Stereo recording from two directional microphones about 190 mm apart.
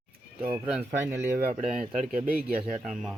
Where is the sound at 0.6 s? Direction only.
10° right (ahead or behind).